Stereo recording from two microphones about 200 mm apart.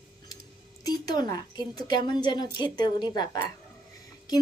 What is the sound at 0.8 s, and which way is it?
A woman's voice, 20° left (ahead or behind).